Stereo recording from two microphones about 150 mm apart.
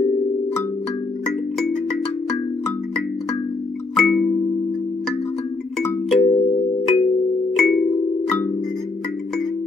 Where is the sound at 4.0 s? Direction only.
Centre (ahead or behind).